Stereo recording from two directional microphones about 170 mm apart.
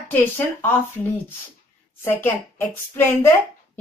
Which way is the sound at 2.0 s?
15° left (ahead or behind).